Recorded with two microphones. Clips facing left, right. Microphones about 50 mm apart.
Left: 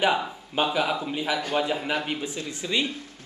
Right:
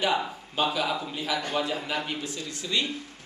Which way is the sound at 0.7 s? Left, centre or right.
Centre.